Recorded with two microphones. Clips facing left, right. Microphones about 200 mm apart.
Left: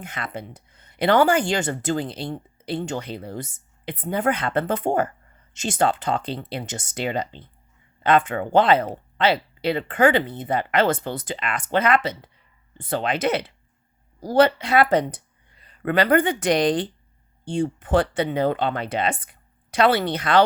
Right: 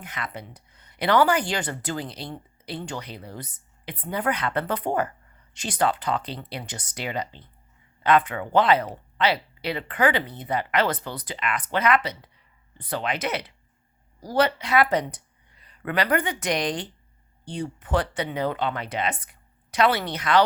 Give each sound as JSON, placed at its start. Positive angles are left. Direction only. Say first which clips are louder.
{"t": 0.0, "sound": "speech", "louder": "left 3 dB", "side_deg": 25}